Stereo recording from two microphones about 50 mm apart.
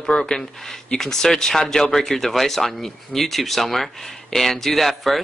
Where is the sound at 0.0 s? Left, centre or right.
Centre.